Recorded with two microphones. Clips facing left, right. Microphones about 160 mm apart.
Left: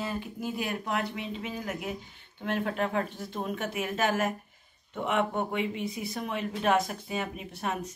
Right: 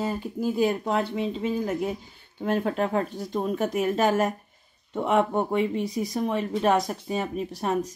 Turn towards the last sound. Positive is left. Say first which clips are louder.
# right 7 dB
turn(degrees=-35)  # may be behind; listen again after turning